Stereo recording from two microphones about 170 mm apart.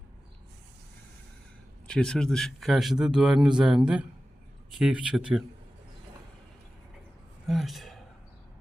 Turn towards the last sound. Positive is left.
turn(degrees=0)  # may be behind; listen again after turning